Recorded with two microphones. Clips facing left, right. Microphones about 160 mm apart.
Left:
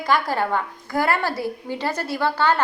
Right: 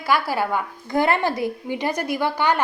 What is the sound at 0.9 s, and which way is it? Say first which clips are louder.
A woman's voice: right 2 dB; 20° right (ahead or behind).